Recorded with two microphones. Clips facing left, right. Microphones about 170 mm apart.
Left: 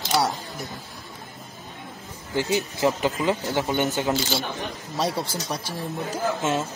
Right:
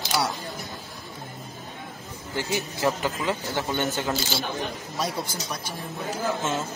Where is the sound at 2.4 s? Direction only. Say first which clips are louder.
Left 4 dB; 20° left (ahead or behind).